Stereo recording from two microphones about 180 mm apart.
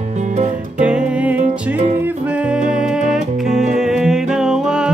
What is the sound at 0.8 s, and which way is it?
Music, 5° right (ahead or behind).